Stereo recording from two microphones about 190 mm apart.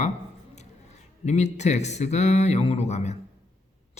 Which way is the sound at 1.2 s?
35° left (ahead or behind).